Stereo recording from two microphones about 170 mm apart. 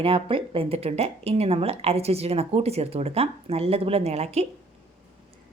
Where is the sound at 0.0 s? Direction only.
30° right (ahead or behind).